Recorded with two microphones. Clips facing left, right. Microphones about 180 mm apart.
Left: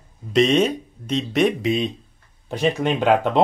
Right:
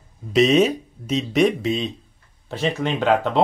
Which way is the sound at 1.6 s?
15° left (ahead or behind).